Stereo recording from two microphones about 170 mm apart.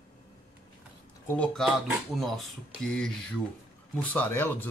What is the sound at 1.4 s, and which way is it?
Speech, 5° left (ahead or behind).